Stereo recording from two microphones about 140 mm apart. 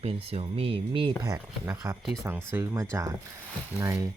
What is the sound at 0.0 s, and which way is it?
Speech, 45° right (ahead or behind).